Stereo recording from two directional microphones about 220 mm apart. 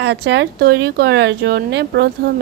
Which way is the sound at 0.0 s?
50° right (ahead or behind).